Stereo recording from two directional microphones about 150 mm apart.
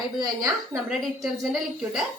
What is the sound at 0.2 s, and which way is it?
Speech, 25° right (ahead or behind).